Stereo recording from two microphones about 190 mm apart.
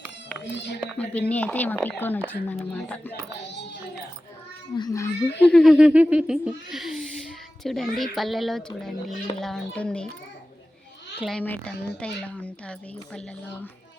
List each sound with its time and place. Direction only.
0.4 s speech: 65° left (ahead or behind)
1.3 s speech: 10° left (ahead or behind)
4.7 s speech: 20° left (ahead or behind); by 10.1 s 5° left (ahead or behind)
11.2 s speech: 5° left (ahead or behind)